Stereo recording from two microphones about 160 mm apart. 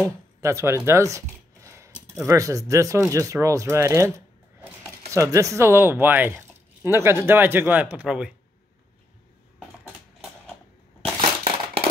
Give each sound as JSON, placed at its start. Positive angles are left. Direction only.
{"t": 0.0, "sound": "speech", "side_deg": -20}
{"t": 5.1, "sound": "speech", "side_deg": -20}
{"t": 11.1, "sound": "crushing", "side_deg": -35}